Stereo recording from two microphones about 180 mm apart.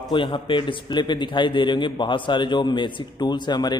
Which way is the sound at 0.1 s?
25° left (ahead or behind).